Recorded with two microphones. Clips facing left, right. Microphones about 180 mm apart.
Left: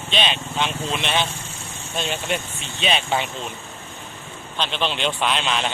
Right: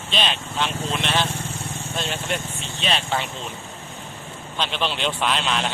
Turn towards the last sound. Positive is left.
turn(degrees=0)  # may be behind; listen again after turning